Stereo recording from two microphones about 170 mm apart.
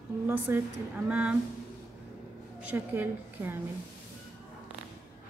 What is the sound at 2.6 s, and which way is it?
Speech, 10° right (ahead or behind).